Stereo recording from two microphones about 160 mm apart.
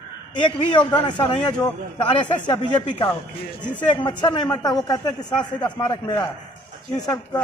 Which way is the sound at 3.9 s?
30° left (ahead or behind).